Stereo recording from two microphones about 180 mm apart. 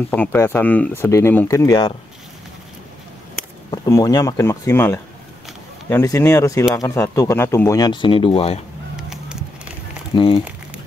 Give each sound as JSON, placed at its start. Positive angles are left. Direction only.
{"t": 0.1, "sound": "speech", "side_deg": 10}
{"t": 3.7, "sound": "speech", "side_deg": 20}
{"t": 8.9, "sound": "a sound", "side_deg": -5}
{"t": 10.1, "sound": "speech", "side_deg": 30}